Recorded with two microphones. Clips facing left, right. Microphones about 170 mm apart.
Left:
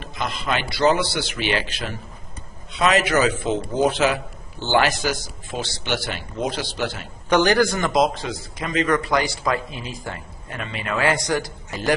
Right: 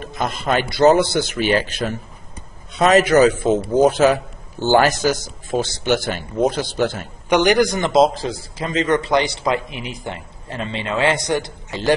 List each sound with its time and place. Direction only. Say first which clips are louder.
0.0 s a man's voice: right 4 dB; 50° right (ahead or behind)
7.2 s a man's voice: right 2 dB; 15° right (ahead or behind)